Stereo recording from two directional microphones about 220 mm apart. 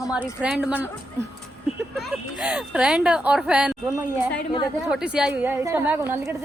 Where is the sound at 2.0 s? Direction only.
5° right (ahead or behind).